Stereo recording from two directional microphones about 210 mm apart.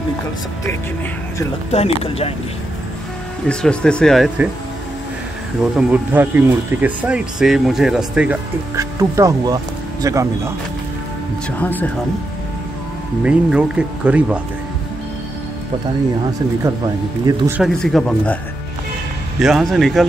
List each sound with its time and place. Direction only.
2.0 s speech: 30° left (ahead or behind)
3.4 s speech: 5° left (ahead or behind)
5.8 s speech: 5° right (ahead or behind)
11.5 s speech: 10° left (ahead or behind)
13.2 s speech: 5° right (ahead or behind)
16.6 s speech: 15° right (ahead or behind)
17.6 s speech: centre (ahead or behind)
19.4 s speech: centre (ahead or behind)